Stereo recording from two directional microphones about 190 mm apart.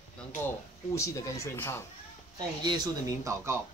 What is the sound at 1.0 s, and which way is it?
Speech, 15° left (ahead or behind).